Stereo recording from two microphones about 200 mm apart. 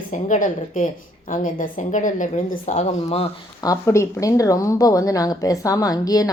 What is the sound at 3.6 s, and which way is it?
Speech, 15° left (ahead or behind).